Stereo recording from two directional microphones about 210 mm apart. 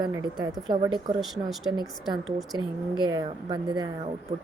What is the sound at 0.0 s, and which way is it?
Speech, 20° right (ahead or behind).